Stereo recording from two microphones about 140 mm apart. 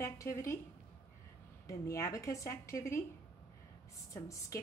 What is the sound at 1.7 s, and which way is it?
Speech, 25° left (ahead or behind).